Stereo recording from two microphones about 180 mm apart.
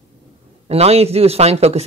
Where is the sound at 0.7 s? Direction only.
35° right (ahead or behind).